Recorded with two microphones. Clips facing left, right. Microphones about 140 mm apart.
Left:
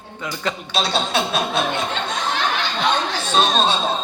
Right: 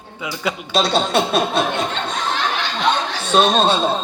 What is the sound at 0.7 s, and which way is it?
Speech, 50° right (ahead or behind).